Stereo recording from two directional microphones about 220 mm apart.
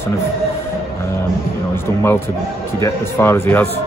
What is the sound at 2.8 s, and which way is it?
Speech, 10° left (ahead or behind).